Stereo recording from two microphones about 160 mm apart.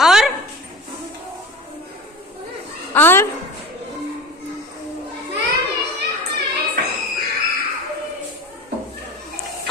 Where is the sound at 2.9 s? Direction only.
15° left (ahead or behind).